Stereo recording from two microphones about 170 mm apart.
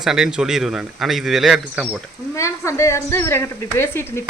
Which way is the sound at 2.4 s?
15° left (ahead or behind).